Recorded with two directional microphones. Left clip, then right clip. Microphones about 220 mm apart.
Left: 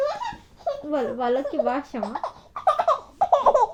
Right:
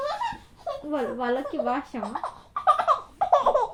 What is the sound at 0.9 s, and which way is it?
Speech, 30° left (ahead or behind).